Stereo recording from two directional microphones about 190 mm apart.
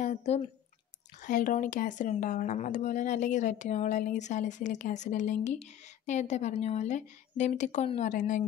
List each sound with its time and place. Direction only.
0.0 s speech: 40° left (ahead or behind)